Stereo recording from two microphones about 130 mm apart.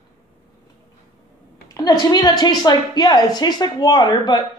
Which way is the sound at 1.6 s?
30° left (ahead or behind).